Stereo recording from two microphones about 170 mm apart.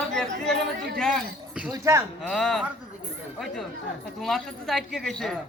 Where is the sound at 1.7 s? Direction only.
15° right (ahead or behind).